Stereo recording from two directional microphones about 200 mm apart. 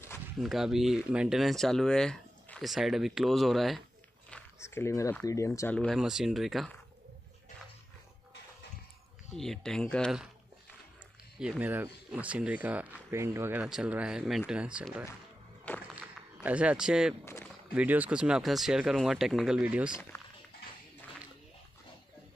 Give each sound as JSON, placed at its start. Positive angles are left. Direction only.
{"t": 0.4, "sound": "speech", "side_deg": 0}
{"t": 4.3, "sound": "a sound", "side_deg": 10}
{"t": 5.2, "sound": "speech", "side_deg": 15}
{"t": 9.4, "sound": "speech", "side_deg": 0}
{"t": 11.3, "sound": "speech", "side_deg": -5}
{"t": 15.7, "sound": "music", "side_deg": 5}
{"t": 16.4, "sound": "speech", "side_deg": -5}
{"t": 17.2, "sound": "a sound", "side_deg": 10}
{"t": 17.7, "sound": "speech", "side_deg": -10}
{"t": 20.1, "sound": "a sound", "side_deg": 15}